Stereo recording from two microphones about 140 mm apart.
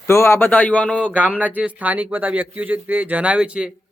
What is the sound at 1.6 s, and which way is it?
Speech, 10° right (ahead or behind).